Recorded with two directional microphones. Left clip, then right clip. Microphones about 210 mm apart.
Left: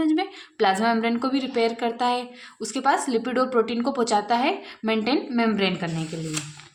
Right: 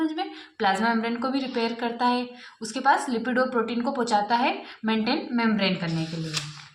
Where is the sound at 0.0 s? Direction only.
40° left (ahead or behind).